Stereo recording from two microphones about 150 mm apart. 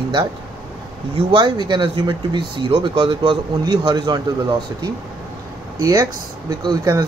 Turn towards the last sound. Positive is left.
turn(degrees=-25)  # may be behind; listen again after turning